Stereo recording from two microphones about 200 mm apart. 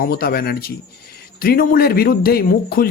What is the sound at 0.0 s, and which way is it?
Speech, 50° left (ahead or behind).